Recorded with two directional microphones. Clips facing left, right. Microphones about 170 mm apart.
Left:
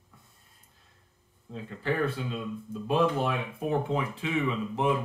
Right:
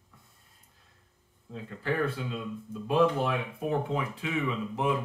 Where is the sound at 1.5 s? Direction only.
25° left (ahead or behind).